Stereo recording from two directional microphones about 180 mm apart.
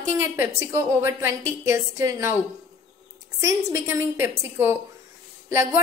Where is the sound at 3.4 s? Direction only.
15° right (ahead or behind).